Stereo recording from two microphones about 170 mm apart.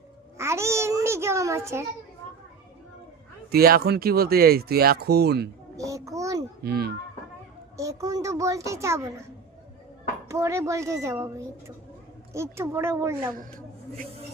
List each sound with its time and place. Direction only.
0.3 s a sound: 15° right (ahead or behind)
3.5 s speech: 65° right (ahead or behind)
5.7 s a child's voice: 20° right (ahead or behind)
6.6 s a child's voice: 70° right (ahead or behind)
7.8 s a child's voice: 20° right (ahead or behind)
10.2 s speech: 15° right (ahead or behind)